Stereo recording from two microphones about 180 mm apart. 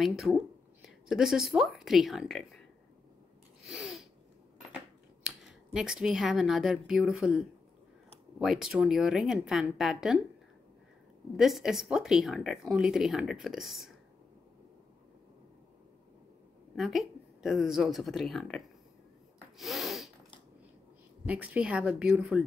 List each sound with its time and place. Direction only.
0.0 s speech: centre (ahead or behind)
3.6 s sneeze: centre (ahead or behind)
5.2 s speech: centre (ahead or behind)
11.3 s speech: centre (ahead or behind)
16.7 s speech: centre (ahead or behind)
19.6 s snort: centre (ahead or behind)
21.3 s speech: 5° right (ahead or behind)